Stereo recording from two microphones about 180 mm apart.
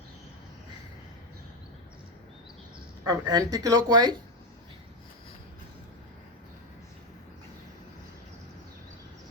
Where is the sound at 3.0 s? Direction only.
20° right (ahead or behind).